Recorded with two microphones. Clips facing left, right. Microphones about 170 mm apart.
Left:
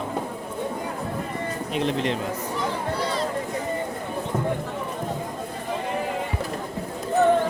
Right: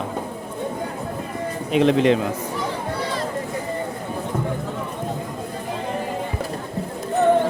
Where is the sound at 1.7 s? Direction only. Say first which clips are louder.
Right 9 dB; 90° right.